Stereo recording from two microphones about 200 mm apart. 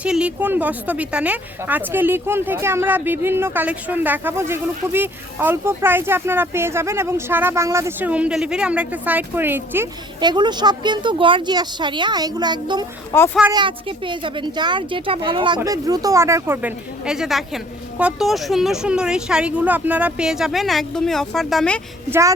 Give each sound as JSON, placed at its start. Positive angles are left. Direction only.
{"t": 0.0, "sound": "a woman's voice", "side_deg": -5}
{"t": 10.2, "sound": "speech", "side_deg": -20}
{"t": 13.1, "sound": "speech", "side_deg": 10}
{"t": 13.5, "sound": "speech", "side_deg": -25}